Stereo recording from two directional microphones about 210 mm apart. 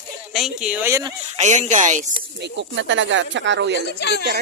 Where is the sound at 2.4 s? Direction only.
60° right (ahead or behind).